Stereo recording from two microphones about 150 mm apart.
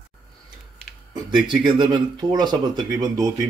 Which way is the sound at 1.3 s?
30° right (ahead or behind).